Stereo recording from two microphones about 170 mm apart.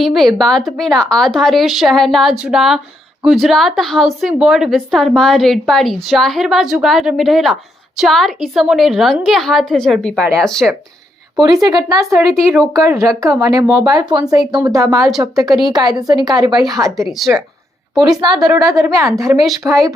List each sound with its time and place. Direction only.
0.0 s a woman's voice: centre (ahead or behind)
11.3 s speech: 20° right (ahead or behind)
17.1 s a woman's voice: centre (ahead or behind)
18.4 s a woman's voice: 20° right (ahead or behind)